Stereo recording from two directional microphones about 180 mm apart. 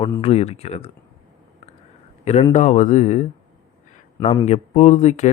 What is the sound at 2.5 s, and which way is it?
Speech, 40° left (ahead or behind).